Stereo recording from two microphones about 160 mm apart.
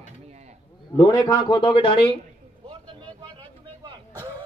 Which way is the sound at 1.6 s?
35° left (ahead or behind).